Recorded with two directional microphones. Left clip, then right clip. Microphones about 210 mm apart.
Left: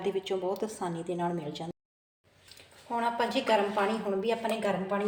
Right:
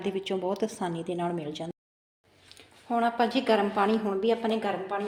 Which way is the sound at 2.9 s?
40° right (ahead or behind).